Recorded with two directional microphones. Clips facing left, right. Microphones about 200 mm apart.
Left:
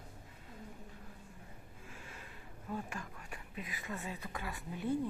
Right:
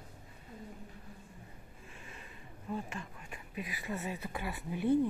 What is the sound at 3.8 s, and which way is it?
Speech, 15° right (ahead or behind).